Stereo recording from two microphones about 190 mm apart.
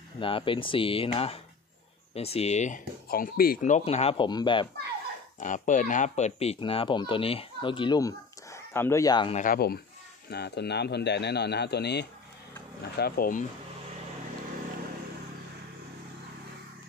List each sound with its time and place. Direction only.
0.2 s speech: 25° left (ahead or behind)
5.4 s speech: 40° left (ahead or behind); by 9.3 s 20° left (ahead or behind)
9.3 s speech: 45° left (ahead or behind)